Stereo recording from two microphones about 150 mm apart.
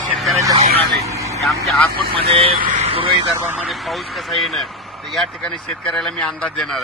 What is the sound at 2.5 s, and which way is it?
Speech, 60° right (ahead or behind).